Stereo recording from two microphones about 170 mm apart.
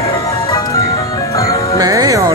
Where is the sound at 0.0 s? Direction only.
20° left (ahead or behind).